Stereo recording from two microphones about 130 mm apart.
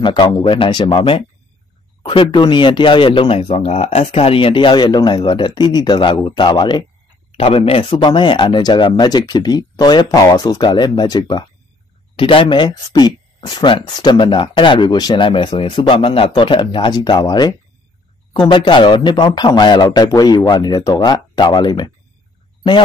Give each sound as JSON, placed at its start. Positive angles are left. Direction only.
{"t": 0.0, "sound": "speech", "side_deg": 35}
{"t": 7.3, "sound": "speech", "side_deg": 50}
{"t": 7.9, "sound": "speech", "side_deg": 35}
{"t": 12.2, "sound": "speech", "side_deg": 45}